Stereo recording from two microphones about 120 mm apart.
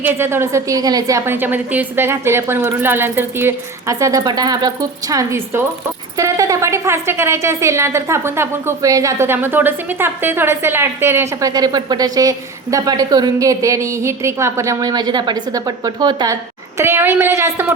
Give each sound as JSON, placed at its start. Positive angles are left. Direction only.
{"t": 0.0, "sound": "speech", "side_deg": -20}
{"t": 16.3, "sound": "speech", "side_deg": -20}